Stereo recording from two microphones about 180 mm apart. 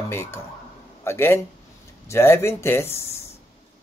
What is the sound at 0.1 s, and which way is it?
Speech, 15° left (ahead or behind).